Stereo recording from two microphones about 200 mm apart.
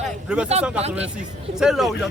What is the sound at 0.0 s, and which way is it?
Speech, 5° right (ahead or behind).